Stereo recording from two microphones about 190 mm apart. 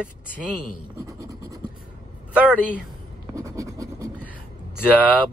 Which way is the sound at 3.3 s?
15° right (ahead or behind).